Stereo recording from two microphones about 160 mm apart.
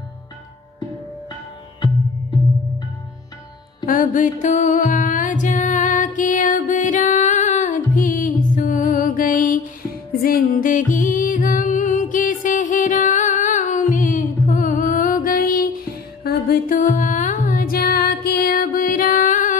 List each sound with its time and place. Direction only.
3.8 s music: 55° left (ahead or behind)